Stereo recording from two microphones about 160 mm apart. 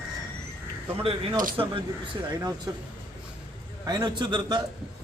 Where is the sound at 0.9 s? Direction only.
35° right (ahead or behind).